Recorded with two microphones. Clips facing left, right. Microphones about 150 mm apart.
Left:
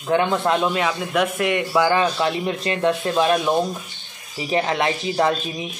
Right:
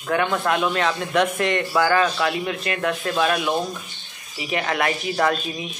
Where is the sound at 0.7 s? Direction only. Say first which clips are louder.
Even; 10° left (ahead or behind).